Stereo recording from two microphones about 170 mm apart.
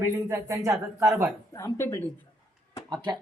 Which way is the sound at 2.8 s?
25° right (ahead or behind).